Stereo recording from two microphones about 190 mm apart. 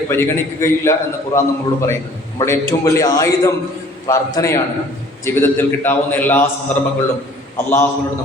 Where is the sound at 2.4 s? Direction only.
15° left (ahead or behind).